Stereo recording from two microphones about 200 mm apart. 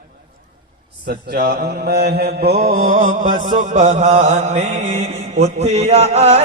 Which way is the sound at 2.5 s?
35° right (ahead or behind).